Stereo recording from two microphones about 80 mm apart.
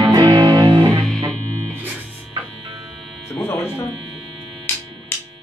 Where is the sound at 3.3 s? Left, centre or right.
Left.